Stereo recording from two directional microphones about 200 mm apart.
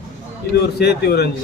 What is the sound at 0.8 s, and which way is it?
Speech, 55° left (ahead or behind).